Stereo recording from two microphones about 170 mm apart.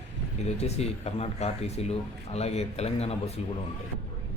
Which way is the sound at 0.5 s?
40° left (ahead or behind).